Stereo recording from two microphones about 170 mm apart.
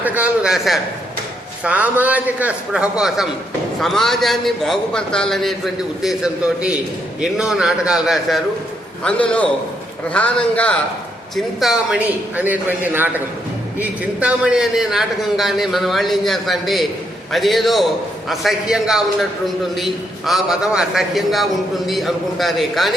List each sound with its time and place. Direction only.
0.0 s a man's voice: 10° right (ahead or behind)